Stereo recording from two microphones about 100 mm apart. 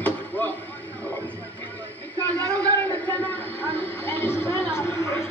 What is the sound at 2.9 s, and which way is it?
Music, 20° left (ahead or behind).